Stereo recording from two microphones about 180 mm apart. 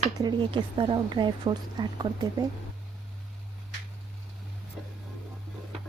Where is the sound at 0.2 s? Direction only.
25° right (ahead or behind).